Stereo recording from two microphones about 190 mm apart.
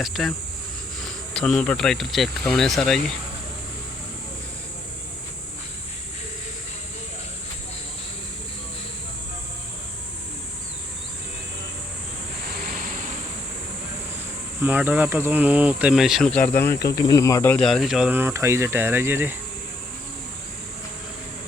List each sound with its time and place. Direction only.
0.0 s speech: centre (ahead or behind)
14.6 s speech: 10° right (ahead or behind); by 16.5 s 5° left (ahead or behind)
16.9 s speech: 20° left (ahead or behind)
17.7 s speech: centre (ahead or behind)